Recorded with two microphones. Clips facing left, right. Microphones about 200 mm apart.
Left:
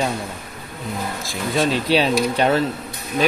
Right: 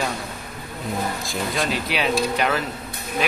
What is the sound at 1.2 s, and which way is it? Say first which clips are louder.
Speech: left 4 dB; centre (ahead or behind).